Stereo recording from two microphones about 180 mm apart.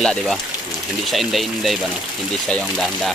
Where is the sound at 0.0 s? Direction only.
5° left (ahead or behind).